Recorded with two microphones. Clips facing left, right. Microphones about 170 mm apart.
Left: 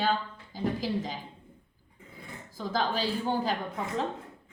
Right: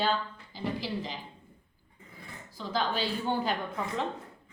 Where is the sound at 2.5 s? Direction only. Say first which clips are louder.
Left 1 dB; 40° left (ahead or behind).